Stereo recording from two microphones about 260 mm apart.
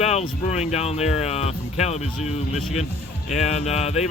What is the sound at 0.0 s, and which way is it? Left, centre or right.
Speech, left.